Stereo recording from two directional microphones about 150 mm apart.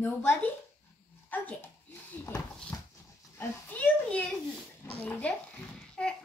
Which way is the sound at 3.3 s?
10° left (ahead or behind).